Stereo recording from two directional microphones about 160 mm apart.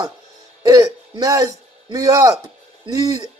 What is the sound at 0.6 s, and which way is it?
A man's voice, 25° right (ahead or behind).